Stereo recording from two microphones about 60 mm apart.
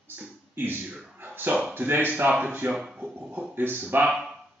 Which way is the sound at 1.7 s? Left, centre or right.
Right.